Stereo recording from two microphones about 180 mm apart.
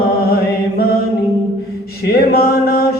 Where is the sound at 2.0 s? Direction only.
60° left (ahead or behind).